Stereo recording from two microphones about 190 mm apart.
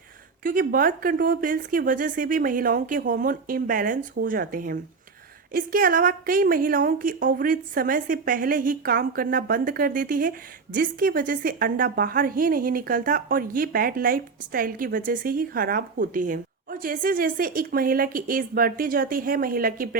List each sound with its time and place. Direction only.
0.4 s a woman's voice: 50° right (ahead or behind)